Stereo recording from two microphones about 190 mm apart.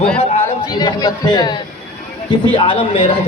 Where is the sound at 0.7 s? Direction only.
20° left (ahead or behind).